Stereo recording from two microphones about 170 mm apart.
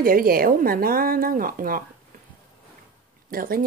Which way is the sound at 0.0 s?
60° right (ahead or behind).